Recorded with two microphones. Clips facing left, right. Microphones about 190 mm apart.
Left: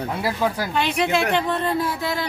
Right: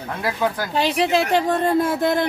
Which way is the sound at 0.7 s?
35° right (ahead or behind).